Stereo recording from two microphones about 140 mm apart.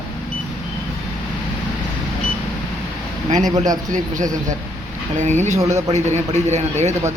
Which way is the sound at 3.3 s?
60° right (ahead or behind).